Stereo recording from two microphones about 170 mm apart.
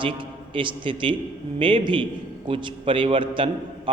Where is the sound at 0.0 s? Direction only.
30° right (ahead or behind).